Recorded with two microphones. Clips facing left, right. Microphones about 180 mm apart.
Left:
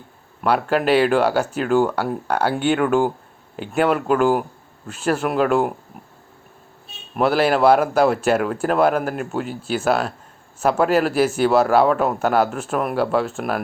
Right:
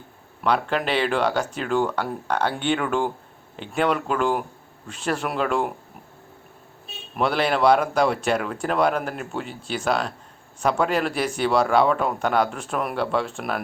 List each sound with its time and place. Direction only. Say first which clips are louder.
0.4 s speech: left 4 dB; 5° left (ahead or behind)
7.2 s speech: left 4 dB; 5° left (ahead or behind)